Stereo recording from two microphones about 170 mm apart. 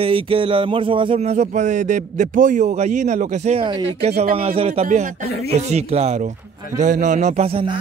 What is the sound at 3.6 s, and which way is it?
A woman's voice, 30° right (ahead or behind).